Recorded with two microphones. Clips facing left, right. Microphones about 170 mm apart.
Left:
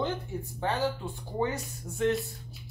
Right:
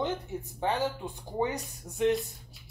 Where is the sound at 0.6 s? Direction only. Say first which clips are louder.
Even; 15° right (ahead or behind).